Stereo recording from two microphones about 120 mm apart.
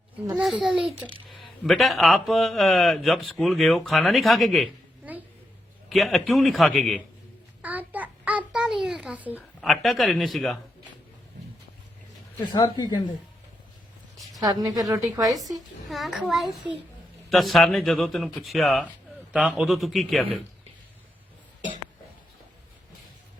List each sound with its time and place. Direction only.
0.6 s a child's voice: 5° right (ahead or behind)
5.9 s speech: centre (ahead or behind)
7.6 s a sound: 15° right (ahead or behind)
9.6 s speech: centre (ahead or behind)
12.7 s a woman's voice: 35° left (ahead or behind)
14.4 s a woman's voice: 35° right (ahead or behind)
15.9 s speech: centre (ahead or behind)